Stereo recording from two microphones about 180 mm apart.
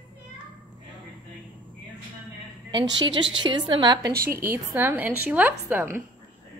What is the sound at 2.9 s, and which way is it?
A woman's voice, 25° right (ahead or behind).